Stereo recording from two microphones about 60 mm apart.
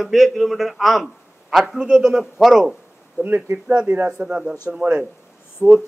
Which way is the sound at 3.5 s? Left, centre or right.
Centre.